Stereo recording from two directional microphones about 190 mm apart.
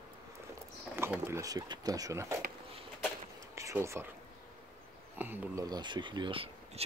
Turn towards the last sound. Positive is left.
turn(degrees=-30)  # may be behind; listen again after turning